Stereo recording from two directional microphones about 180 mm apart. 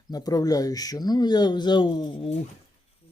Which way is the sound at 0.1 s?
20° left (ahead or behind).